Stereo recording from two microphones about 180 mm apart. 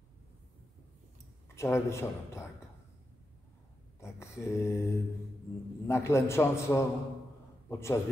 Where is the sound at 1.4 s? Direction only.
15° left (ahead or behind).